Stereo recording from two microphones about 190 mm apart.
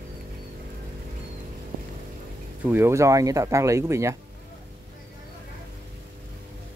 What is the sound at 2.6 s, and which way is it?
Speech, 10° right (ahead or behind).